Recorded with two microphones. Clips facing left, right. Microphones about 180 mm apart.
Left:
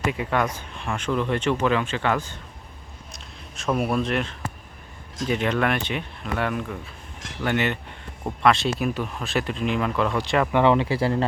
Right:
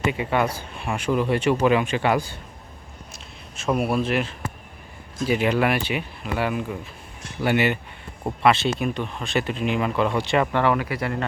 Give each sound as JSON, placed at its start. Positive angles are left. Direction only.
{"t": 0.0, "sound": "speech", "side_deg": 0}
{"t": 3.8, "sound": "speech", "side_deg": -5}
{"t": 10.5, "sound": "speech", "side_deg": 20}